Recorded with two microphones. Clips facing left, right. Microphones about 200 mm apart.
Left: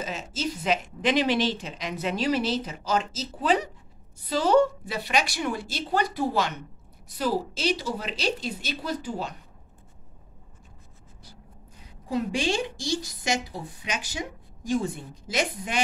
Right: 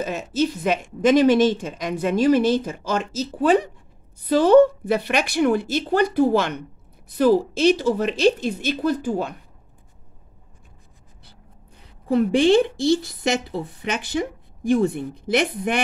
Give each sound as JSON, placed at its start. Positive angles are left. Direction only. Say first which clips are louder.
{"t": 0.7, "sound": "a woman's voice", "louder": "right 5 dB", "side_deg": -45}
{"t": 12.1, "sound": "a woman's voice", "louder": "right 10 dB", "side_deg": -60}